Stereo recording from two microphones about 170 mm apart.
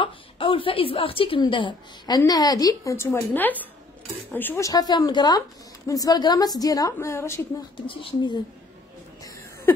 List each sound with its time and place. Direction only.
0.0 s a woman's voice: 30° left (ahead or behind); by 7.4 s 15° left (ahead or behind)
7.8 s speech: 30° left (ahead or behind)
9.2 s a sound: 20° left (ahead or behind)